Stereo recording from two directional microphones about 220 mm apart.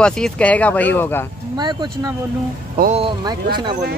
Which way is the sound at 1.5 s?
20° right (ahead or behind).